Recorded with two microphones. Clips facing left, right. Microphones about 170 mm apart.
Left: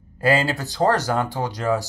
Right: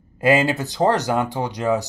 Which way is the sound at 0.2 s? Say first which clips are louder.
Right 3 dB; 20° right (ahead or behind).